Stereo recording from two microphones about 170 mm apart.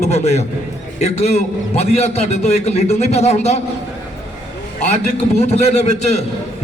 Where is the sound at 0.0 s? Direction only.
40° left (ahead or behind).